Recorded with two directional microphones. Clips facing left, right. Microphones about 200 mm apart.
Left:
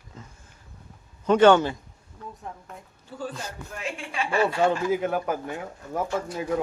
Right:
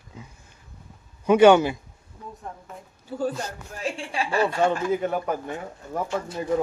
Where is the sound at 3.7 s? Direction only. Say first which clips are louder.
Right 3 dB; 35° right (ahead or behind).